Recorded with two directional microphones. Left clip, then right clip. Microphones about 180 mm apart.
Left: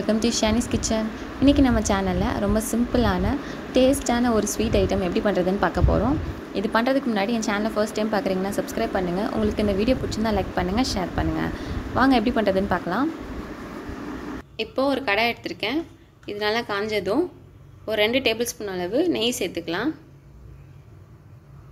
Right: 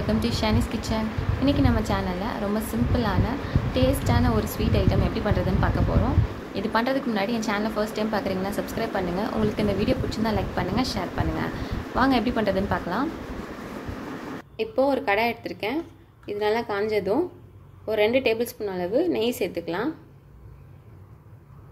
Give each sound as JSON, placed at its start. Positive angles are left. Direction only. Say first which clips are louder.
{"t": 0.0, "sound": "a woman's voice", "louder": "left 3 dB", "side_deg": 35}
{"t": 14.6, "sound": "a woman's voice", "louder": "right 1 dB", "side_deg": -5}